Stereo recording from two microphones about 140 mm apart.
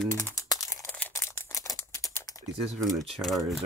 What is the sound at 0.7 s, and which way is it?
Computer keyboard, 10° left (ahead or behind).